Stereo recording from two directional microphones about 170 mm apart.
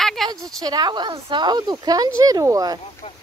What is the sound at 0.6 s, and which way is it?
Speech, 25° right (ahead or behind).